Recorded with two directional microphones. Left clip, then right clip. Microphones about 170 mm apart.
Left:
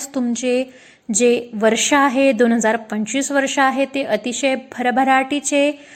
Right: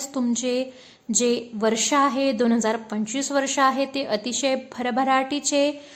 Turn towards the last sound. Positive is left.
turn(degrees=15)  # may be behind; listen again after turning